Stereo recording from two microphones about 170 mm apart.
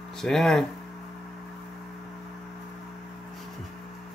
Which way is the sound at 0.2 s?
Centre (ahead or behind).